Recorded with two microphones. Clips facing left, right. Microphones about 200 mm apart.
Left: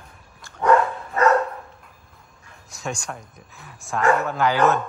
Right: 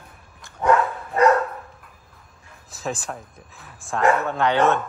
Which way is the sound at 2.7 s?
Centre (ahead or behind).